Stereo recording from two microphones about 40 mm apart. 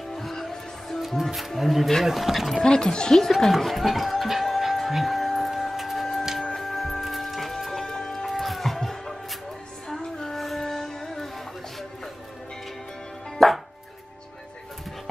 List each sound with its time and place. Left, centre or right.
0.1 s music: centre
1.0 s speech: centre
2.6 s speech: centre
3.3 s speech: centre
3.5 s music: centre
8.3 s cat: centre
9.8 s music: centre
13.4 s music: centre